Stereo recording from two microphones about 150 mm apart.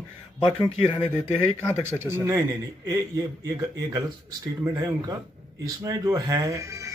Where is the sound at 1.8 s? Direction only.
15° right (ahead or behind).